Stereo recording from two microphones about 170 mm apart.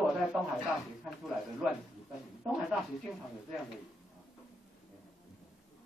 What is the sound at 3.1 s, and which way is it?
Speech, 10° right (ahead or behind).